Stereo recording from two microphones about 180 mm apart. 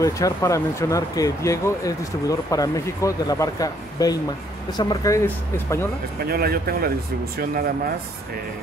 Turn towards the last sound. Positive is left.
turn(degrees=-60)  # may be behind; listen again after turning